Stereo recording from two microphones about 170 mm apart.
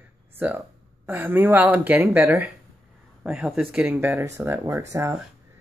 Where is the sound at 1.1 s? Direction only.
10° right (ahead or behind).